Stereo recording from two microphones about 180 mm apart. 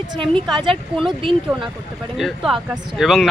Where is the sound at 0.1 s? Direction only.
30° right (ahead or behind).